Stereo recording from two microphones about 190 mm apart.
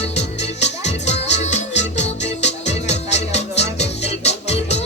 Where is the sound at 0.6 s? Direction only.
35° left (ahead or behind).